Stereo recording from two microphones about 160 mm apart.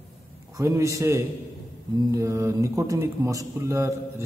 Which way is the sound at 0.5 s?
20° right (ahead or behind).